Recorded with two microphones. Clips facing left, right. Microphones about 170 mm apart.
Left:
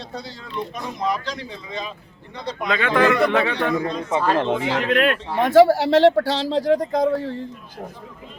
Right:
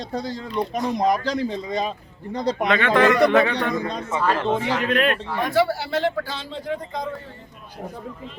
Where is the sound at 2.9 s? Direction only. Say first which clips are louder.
Even; 15° right (ahead or behind).